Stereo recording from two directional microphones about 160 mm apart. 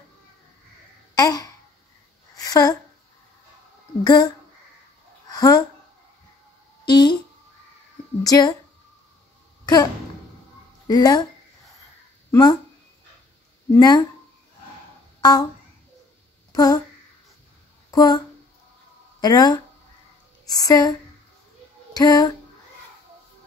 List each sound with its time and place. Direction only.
1.1 s babbling: 25° left (ahead or behind)
2.4 s a woman's voice: 20° left (ahead or behind)
4.0 s a woman's voice: 25° left (ahead or behind)
5.3 s speech: 25° left (ahead or behind)
6.9 s a sound: 25° left (ahead or behind)
8.2 s a woman's voice: 25° left (ahead or behind)
10.9 s a woman's voice: 25° left (ahead or behind)
12.3 s speech: 25° left (ahead or behind)
13.7 s a woman's voice: 25° left (ahead or behind)
15.1 s a sound: 25° left (ahead or behind)
16.5 s a sound: 25° left (ahead or behind)
17.9 s a woman's voice: 25° left (ahead or behind)
19.2 s a woman's voice: 25° left (ahead or behind)
21.9 s music: 25° left (ahead or behind)